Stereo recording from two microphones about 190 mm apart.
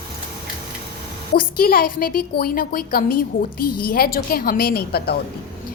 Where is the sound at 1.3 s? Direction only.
50° left (ahead or behind).